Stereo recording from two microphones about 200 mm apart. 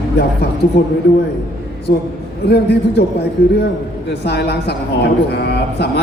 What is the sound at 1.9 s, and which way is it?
A woman's voice, 55° left (ahead or behind).